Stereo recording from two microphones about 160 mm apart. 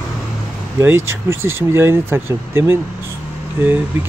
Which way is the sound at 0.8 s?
15° right (ahead or behind).